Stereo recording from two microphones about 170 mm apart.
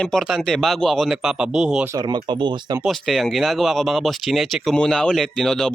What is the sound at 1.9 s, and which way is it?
Speech, 25° right (ahead or behind).